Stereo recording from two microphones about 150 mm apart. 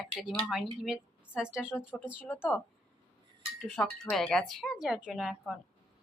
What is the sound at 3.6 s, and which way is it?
A woman's voice, 5° left (ahead or behind).